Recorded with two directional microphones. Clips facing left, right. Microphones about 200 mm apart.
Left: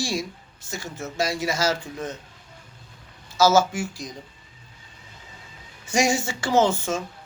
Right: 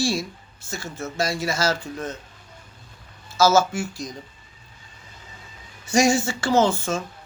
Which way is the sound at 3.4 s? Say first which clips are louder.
Even; 15° left (ahead or behind).